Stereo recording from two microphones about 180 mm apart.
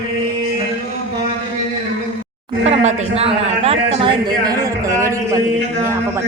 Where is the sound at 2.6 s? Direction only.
40° right (ahead or behind); by 5.4 s 20° right (ahead or behind).